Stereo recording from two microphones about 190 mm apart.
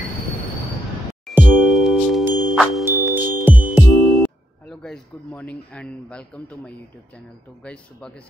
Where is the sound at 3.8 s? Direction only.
Centre (ahead or behind).